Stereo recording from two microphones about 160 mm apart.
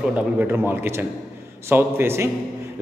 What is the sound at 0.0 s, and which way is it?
A man's voice, 10° right (ahead or behind).